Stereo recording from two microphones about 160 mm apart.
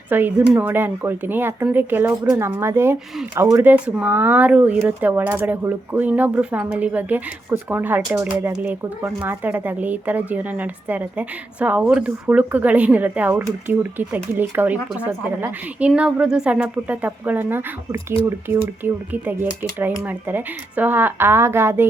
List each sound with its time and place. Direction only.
0.1 s speech: 10° right (ahead or behind)